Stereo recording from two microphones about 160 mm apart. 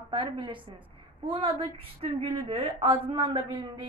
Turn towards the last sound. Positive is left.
turn(degrees=-30)  # may be behind; listen again after turning